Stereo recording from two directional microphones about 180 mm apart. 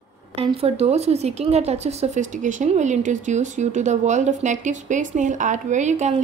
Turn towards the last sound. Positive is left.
turn(degrees=-40)  # may be behind; listen again after turning